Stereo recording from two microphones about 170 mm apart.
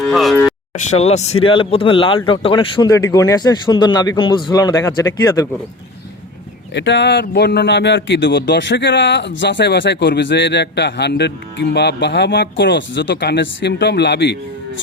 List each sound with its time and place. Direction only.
0.0 s speech: centre (ahead or behind)
0.9 s speech: 40° left (ahead or behind); by 5.5 s 20° left (ahead or behind)
6.7 s a man's voice: 90° left